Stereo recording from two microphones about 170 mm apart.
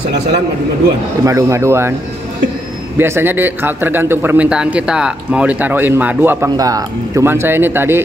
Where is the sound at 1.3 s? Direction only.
20° right (ahead or behind).